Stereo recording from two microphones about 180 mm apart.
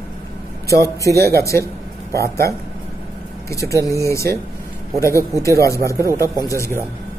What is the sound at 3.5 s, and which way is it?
Speech, 15° left (ahead or behind).